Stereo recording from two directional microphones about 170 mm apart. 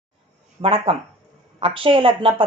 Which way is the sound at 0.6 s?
35° right (ahead or behind).